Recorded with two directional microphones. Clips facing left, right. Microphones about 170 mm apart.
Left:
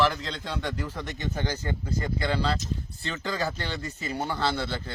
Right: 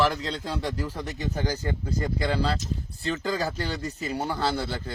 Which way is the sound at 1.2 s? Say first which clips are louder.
Right 2 dB; 10° right (ahead or behind).